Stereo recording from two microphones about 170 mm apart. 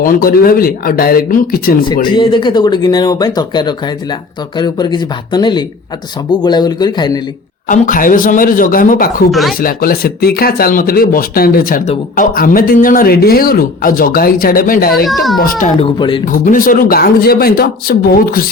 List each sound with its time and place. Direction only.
0.0 s speech: 55° left (ahead or behind)
2.1 s speech: 30° left (ahead or behind)
7.7 s speech: 50° left (ahead or behind)
9.3 s a child's voice: centre (ahead or behind)
9.6 s speech: 60° left (ahead or behind)
15.0 s a child's voice: centre (ahead or behind)
15.4 s speech: 55° left (ahead or behind)
15.8 s speech: 30° left (ahead or behind)
16.2 s speech: 50° left (ahead or behind)